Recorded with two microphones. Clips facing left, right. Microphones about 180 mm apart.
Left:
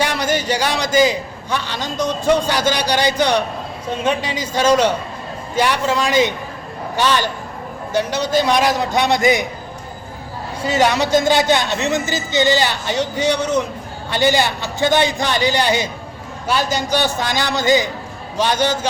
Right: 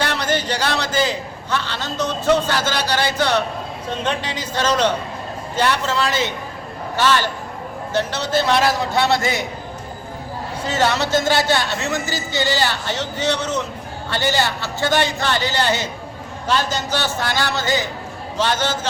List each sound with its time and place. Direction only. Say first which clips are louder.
0.0 s a man's voice: left 2 dB; 10° left (ahead or behind)
10.6 s a man's voice: left 3 dB; 10° left (ahead or behind)